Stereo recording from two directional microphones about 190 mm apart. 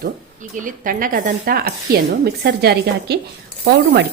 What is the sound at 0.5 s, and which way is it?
Speech, 45° right (ahead or behind).